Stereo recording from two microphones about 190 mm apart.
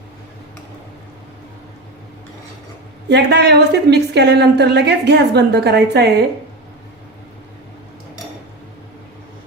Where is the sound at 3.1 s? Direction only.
60° right (ahead or behind).